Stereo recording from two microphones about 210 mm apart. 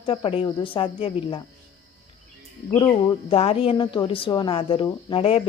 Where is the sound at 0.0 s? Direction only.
25° left (ahead or behind).